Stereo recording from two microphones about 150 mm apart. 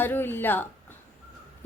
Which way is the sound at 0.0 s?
15° left (ahead or behind).